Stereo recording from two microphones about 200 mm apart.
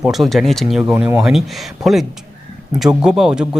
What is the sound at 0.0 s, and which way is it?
Speech, centre (ahead or behind).